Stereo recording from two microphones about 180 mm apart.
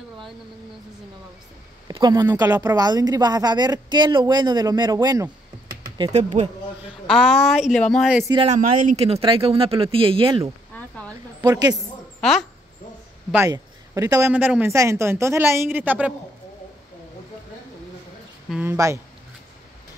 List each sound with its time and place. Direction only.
1.9 s a woman's voice: 20° right (ahead or behind)
6.1 s speech: 40° right (ahead or behind)
7.1 s speech: centre (ahead or behind)
8.5 s speech: 40° right (ahead or behind)
10.7 s a sound: 5° left (ahead or behind)
11.4 s a woman's voice: 20° right (ahead or behind)
12.2 s speech: centre (ahead or behind)
13.5 s a woman's voice: 20° right (ahead or behind)
18.5 s a woman's voice: 10° right (ahead or behind)